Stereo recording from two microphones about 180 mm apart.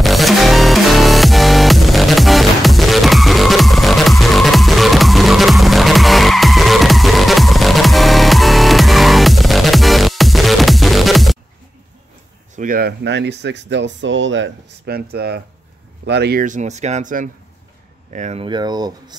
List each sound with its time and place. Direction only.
0.0 s music: centre (ahead or behind)
12.5 s speech: 50° right (ahead or behind)
16.4 s speech: 40° right (ahead or behind)
18.4 s speech: 25° right (ahead or behind)